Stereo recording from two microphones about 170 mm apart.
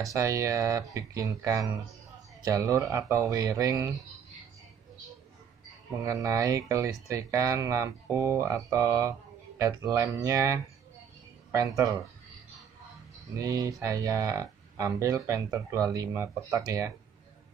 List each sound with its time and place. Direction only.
0.0 s speech: 20° right (ahead or behind)
6.0 s speech: 20° right (ahead or behind)
13.4 s speech: 20° right (ahead or behind)